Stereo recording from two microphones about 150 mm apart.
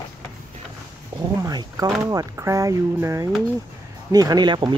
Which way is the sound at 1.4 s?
25° right (ahead or behind).